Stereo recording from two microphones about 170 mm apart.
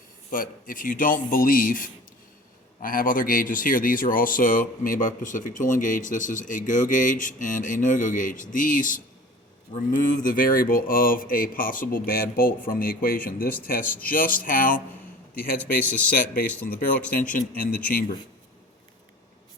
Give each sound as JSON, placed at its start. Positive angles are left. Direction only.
{"t": 0.3, "sound": "speech", "side_deg": 55}
{"t": 15.8, "sound": "speech", "side_deg": 10}
{"t": 17.2, "sound": "speech", "side_deg": 55}